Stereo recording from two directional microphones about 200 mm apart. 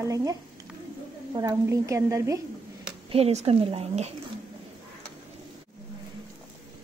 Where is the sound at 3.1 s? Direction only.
30° right (ahead or behind).